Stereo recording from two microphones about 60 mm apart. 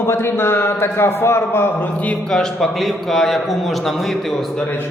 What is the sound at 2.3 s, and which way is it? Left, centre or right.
A man's voice, centre.